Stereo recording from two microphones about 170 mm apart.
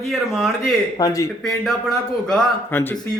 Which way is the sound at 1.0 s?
20° left (ahead or behind).